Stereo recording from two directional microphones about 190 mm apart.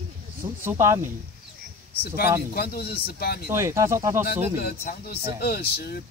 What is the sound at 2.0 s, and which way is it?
Speech, 55° left (ahead or behind).